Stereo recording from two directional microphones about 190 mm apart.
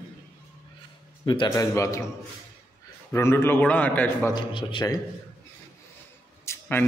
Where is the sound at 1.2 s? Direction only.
25° left (ahead or behind).